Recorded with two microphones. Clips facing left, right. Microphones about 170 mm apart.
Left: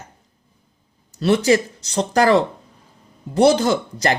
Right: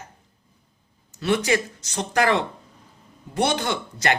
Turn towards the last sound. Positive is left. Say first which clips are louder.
# left 5 dB
turn(degrees=35)  # may be behind; listen again after turning